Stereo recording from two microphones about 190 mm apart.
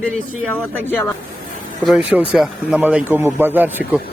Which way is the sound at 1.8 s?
Centre (ahead or behind).